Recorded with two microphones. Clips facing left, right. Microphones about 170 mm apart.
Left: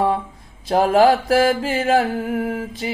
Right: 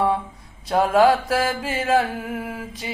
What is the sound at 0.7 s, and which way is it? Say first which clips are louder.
Mantra: left 2 dB; 25° left (ahead or behind).